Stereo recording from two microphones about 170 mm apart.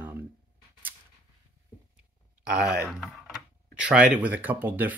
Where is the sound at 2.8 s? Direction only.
Centre (ahead or behind).